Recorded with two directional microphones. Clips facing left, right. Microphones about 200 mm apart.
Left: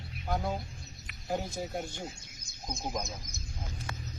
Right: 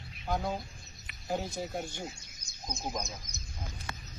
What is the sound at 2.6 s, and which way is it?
Speech, 5° left (ahead or behind).